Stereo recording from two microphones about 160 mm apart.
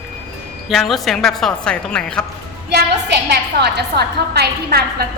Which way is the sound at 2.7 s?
90° right.